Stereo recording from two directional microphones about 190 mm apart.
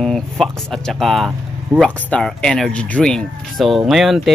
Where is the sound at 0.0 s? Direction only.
5° left (ahead or behind).